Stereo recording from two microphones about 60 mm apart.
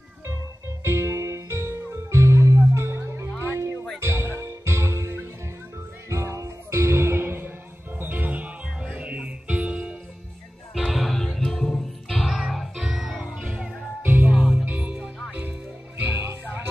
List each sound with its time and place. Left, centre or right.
0.8 s music: right; by 9.9 s centre
10.9 s music: centre
12.3 s music: centre
13.2 s music: right
14.3 s music: centre
16.2 s music: right